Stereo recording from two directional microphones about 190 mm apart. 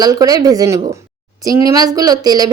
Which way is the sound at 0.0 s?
20° right (ahead or behind).